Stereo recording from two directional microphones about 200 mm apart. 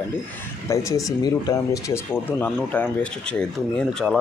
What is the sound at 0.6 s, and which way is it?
Speech, 15° left (ahead or behind).